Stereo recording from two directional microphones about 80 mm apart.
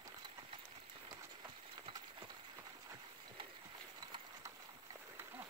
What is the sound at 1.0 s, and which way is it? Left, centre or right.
Run, right.